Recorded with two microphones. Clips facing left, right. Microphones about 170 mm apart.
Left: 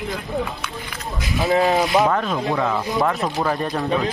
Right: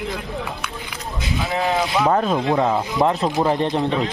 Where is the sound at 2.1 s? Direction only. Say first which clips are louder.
Right 3 dB; 35° right (ahead or behind).